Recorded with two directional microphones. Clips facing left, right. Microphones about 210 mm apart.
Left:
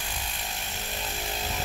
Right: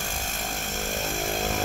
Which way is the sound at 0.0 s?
45° right (ahead or behind).